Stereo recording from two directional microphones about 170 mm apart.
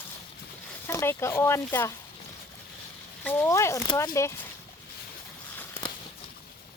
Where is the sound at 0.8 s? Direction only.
15° left (ahead or behind).